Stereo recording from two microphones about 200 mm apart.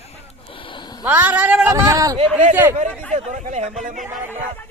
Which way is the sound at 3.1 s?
35° right (ahead or behind).